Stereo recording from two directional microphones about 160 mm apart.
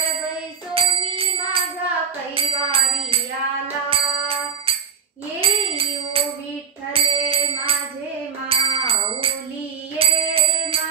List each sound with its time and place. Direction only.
0.7 s music: 35° right (ahead or behind)
2.3 s a sound: 35° right (ahead or behind)
3.9 s music: 35° right (ahead or behind)